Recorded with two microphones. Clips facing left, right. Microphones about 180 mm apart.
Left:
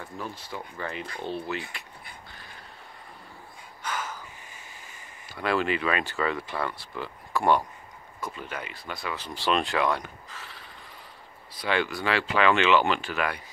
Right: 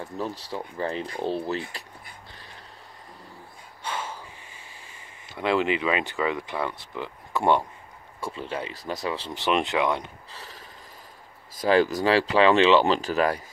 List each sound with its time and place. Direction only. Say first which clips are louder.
0.0 s speech: right 5 dB; 35° right (ahead or behind)
3.8 s gasp: right 1 dB; 30° right (ahead or behind)
5.3 s speech: right 3 dB; 20° right (ahead or behind)
9.3 s speech: right 1 dB; 20° right (ahead or behind)
10.3 s a sound: right 1 dB; 40° right (ahead or behind)
11.5 s speech: right 7 dB; 40° right (ahead or behind)